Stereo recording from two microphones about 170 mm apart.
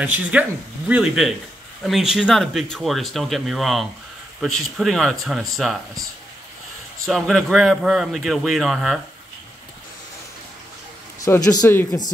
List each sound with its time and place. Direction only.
0.0 s speech: 10° right (ahead or behind)
7.1 s speech: centre (ahead or behind)
11.3 s a man's voice: 10° left (ahead or behind)